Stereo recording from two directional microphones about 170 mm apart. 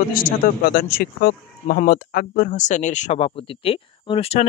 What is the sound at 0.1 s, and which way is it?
Speech, 60° left (ahead or behind).